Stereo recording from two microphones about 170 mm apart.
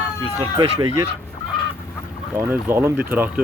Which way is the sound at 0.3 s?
30° right (ahead or behind).